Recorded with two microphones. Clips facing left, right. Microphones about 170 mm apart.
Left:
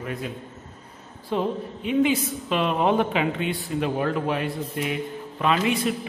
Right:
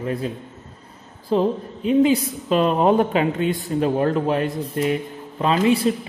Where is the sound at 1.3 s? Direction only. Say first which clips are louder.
Right 6 dB; 35° right (ahead or behind).